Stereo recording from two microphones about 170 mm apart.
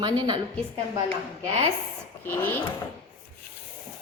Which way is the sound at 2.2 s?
15° left (ahead or behind).